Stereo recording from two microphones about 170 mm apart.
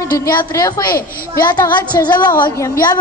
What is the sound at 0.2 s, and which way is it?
Speech, 20° left (ahead or behind).